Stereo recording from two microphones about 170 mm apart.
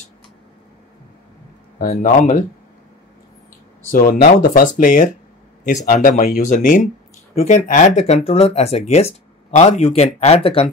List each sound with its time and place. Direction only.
1.8 s speech: 55° left (ahead or behind)
3.9 s speech: 55° left (ahead or behind); by 10.7 s 35° left (ahead or behind)